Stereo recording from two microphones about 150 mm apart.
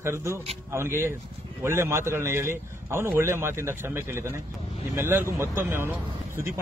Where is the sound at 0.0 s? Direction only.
15° right (ahead or behind).